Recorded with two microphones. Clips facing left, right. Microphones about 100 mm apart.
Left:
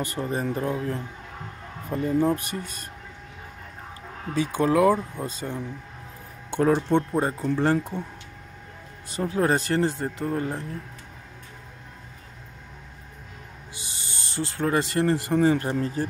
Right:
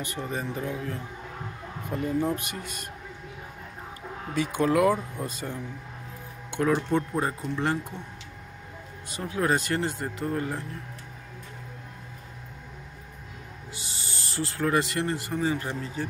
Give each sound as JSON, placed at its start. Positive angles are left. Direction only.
{"t": 0.0, "sound": "speech", "side_deg": 40}
{"t": 4.4, "sound": "speech", "side_deg": 30}
{"t": 7.5, "sound": "speech", "side_deg": 40}
{"t": 9.1, "sound": "speech", "side_deg": 30}
{"t": 14.1, "sound": "speech", "side_deg": 25}
{"t": 15.2, "sound": "speech", "side_deg": 55}